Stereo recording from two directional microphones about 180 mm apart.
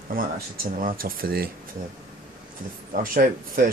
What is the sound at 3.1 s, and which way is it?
Speech, 50° right (ahead or behind).